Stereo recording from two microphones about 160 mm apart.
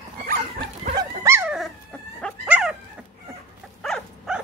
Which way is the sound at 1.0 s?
15° right (ahead or behind).